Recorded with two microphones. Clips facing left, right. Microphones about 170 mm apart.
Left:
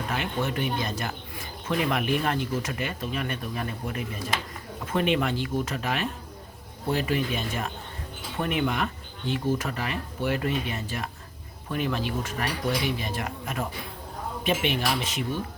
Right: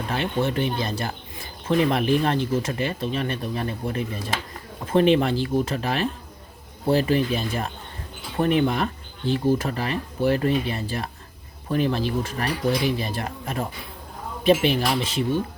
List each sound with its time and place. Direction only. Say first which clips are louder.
0.1 s speech: right 6 dB; 30° right (ahead or behind)